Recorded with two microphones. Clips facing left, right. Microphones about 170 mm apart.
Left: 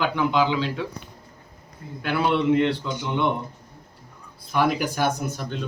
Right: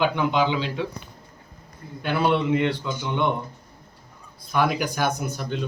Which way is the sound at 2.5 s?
Centre (ahead or behind).